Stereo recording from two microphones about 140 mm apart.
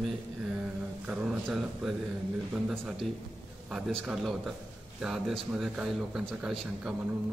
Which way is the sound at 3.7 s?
Centre (ahead or behind).